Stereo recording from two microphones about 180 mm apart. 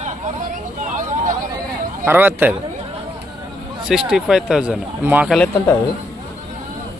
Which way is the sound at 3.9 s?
5° right (ahead or behind).